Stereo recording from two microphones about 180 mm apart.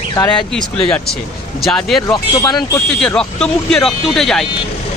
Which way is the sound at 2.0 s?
20° left (ahead or behind).